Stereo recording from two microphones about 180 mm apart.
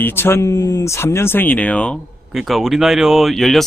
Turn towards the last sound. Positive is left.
turn(degrees=0)  # may be behind; listen again after turning